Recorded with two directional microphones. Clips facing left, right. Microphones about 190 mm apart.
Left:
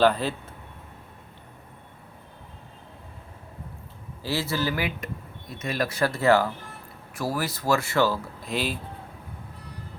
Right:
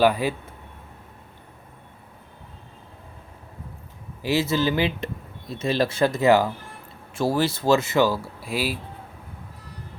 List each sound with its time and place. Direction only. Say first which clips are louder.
0.0 s speech: right 1 dB; 10° right (ahead or behind)
4.2 s speech: right 5 dB; 20° right (ahead or behind)